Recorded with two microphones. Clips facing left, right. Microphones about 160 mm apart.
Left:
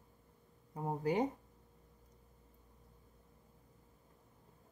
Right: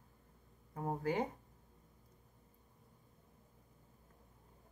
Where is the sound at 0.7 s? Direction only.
15° left (ahead or behind).